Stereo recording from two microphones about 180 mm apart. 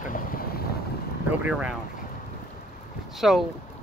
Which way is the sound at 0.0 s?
50° left (ahead or behind).